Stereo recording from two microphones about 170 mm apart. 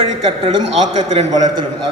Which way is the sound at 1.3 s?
25° right (ahead or behind).